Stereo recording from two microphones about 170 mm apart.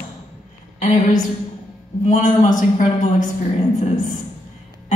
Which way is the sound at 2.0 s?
45° left (ahead or behind).